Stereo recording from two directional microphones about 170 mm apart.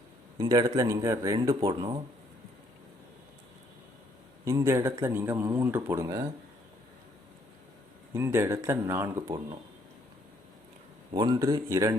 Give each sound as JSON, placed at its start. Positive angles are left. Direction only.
{"t": 0.3, "sound": "speech", "side_deg": -20}
{"t": 4.4, "sound": "speech", "side_deg": -15}
{"t": 8.1, "sound": "speech", "side_deg": -15}
{"t": 11.1, "sound": "speech", "side_deg": -25}